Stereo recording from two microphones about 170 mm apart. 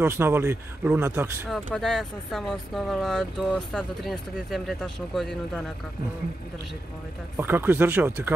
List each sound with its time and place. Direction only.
0.0 s speech: 15° right (ahead or behind)
1.5 s speech: centre (ahead or behind)
7.3 s speech: 10° right (ahead or behind)